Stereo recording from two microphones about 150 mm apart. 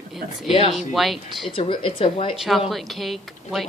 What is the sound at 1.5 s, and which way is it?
Speech, 35° left (ahead or behind).